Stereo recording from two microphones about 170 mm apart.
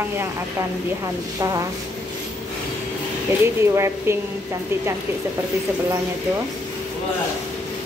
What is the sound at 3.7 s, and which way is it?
Speech, 15° right (ahead or behind).